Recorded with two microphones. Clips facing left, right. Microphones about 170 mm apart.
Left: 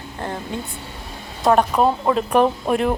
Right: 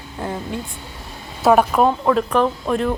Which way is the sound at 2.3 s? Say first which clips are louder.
Left 1 dB; 15° left (ahead or behind).